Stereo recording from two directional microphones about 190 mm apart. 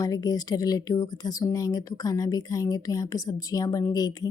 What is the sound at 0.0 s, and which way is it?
Speech, 20° left (ahead or behind).